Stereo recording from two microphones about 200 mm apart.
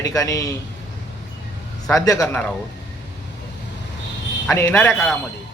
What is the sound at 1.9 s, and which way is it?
Speech, 15° left (ahead or behind).